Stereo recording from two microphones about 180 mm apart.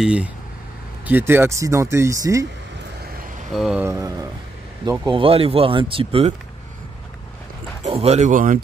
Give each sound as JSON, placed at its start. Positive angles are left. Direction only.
{"t": 0.0, "sound": "speech", "side_deg": -5}
{"t": 3.5, "sound": "speech", "side_deg": 0}
{"t": 3.8, "sound": "speech", "side_deg": -15}
{"t": 5.0, "sound": "speech", "side_deg": -30}
{"t": 7.8, "sound": "speech", "side_deg": -35}